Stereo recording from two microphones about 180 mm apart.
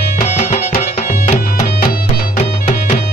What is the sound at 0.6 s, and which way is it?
Music, 55° left (ahead or behind).